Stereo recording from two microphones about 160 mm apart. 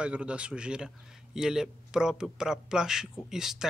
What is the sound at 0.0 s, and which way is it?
A man's voice, 5° right (ahead or behind).